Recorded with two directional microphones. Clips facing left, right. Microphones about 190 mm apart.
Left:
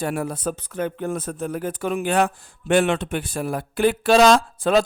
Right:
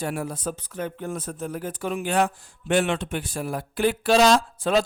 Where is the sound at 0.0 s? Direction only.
60° left (ahead or behind).